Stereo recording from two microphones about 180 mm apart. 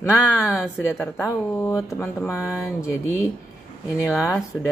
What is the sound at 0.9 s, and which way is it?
Speech, 15° left (ahead or behind).